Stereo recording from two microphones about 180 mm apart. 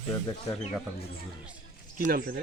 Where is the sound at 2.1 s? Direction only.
55° right (ahead or behind).